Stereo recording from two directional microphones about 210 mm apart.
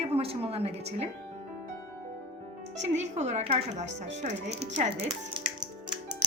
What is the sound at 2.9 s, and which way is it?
Speech, 35° right (ahead or behind).